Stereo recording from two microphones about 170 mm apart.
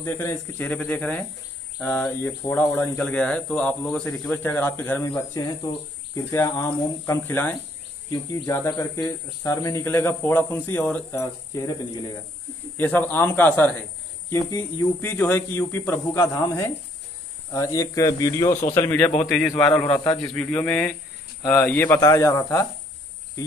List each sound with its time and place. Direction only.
0.0 s speech: 15° left (ahead or behind)
6.1 s speech: 15° left (ahead or behind)
8.1 s speech: 20° left (ahead or behind)
12.7 s speech: 10° left (ahead or behind)
19.9 s speech: 30° left (ahead or behind)
20.3 s speech: 10° left (ahead or behind)